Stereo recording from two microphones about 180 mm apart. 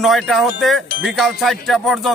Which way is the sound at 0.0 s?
Centre (ahead or behind).